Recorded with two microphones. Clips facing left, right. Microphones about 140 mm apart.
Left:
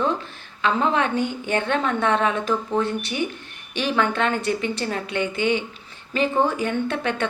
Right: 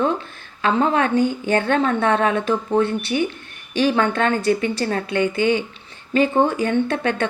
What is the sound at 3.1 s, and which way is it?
A woman's voice, 25° right (ahead or behind).